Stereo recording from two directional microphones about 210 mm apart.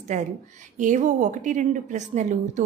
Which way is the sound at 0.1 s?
35° right (ahead or behind).